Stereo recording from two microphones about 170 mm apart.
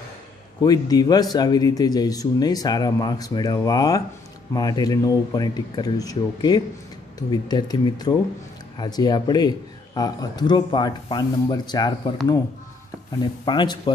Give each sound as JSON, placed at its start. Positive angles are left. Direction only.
{"t": 0.6, "sound": "speech", "side_deg": 20}
{"t": 13.2, "sound": "speech", "side_deg": 25}